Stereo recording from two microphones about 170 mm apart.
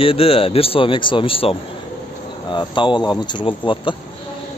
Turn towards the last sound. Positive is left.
turn(degrees=30)  # may be behind; listen again after turning